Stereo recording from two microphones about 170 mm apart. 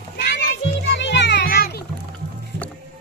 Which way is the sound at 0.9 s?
90° left.